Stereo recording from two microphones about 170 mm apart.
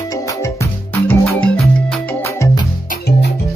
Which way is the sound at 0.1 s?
20° left (ahead or behind).